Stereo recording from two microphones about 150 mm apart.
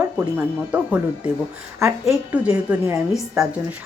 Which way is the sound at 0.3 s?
10° right (ahead or behind).